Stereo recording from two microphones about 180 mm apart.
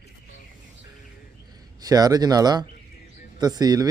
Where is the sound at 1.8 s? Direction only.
20° right (ahead or behind).